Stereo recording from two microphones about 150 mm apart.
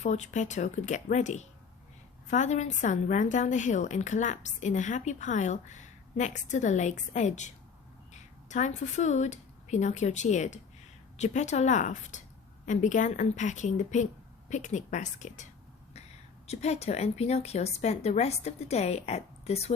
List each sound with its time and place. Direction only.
0.0 s a woman's voice: 50° left (ahead or behind)
16.5 s a woman's voice: 45° left (ahead or behind)